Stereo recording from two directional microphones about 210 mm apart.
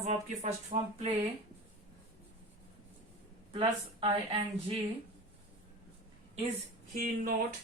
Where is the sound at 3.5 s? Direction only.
30° right (ahead or behind).